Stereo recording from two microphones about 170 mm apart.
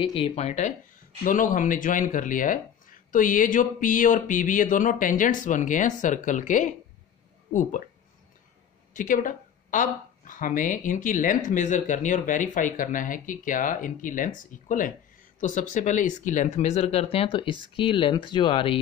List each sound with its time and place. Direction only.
0.1 s speech: 35° left (ahead or behind)
8.9 s speech: 50° left (ahead or behind); by 18.8 s 30° left (ahead or behind)